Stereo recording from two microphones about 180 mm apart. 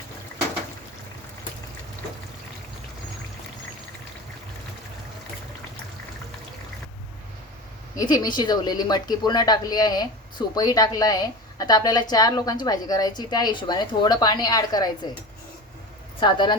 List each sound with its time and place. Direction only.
7.9 s speech: 20° left (ahead or behind)
16.2 s speech: 25° left (ahead or behind)